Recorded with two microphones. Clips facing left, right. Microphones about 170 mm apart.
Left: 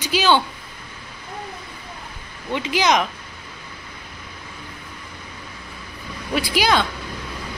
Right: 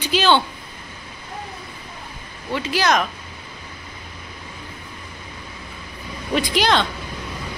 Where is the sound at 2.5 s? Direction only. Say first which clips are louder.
Left 1 dB; 15° left (ahead or behind).